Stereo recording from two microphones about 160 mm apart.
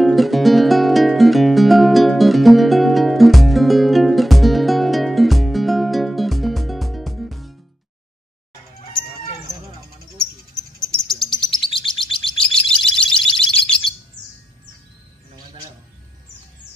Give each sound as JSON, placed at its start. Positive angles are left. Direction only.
{"t": 0.0, "sound": "music", "side_deg": 0}
{"t": 11.1, "sound": "bird", "side_deg": 0}
{"t": 11.5, "sound": "chirp", "side_deg": 30}
{"t": 12.5, "sound": "a sound", "side_deg": 5}